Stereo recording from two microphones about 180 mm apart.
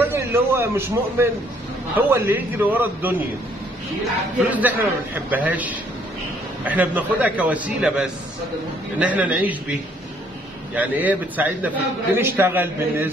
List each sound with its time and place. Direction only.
0.0 s a man's voice: 10° right (ahead or behind)
4.5 s a man's voice: 10° right (ahead or behind)